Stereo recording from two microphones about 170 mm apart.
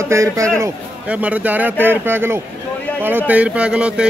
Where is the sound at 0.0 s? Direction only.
15° right (ahead or behind).